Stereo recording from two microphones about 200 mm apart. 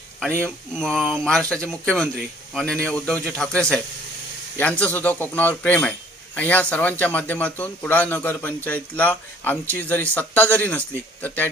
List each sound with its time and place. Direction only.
0.4 s a man's voice: 5° left (ahead or behind)